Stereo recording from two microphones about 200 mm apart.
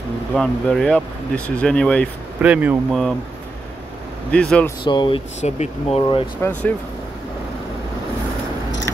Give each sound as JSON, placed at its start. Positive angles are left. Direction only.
{"t": 0.3, "sound": "speech", "side_deg": 0}
{"t": 2.4, "sound": "speech", "side_deg": -5}
{"t": 4.3, "sound": "speech", "side_deg": 5}
{"t": 4.8, "sound": "speech", "side_deg": 25}
{"t": 6.4, "sound": "speech", "side_deg": 5}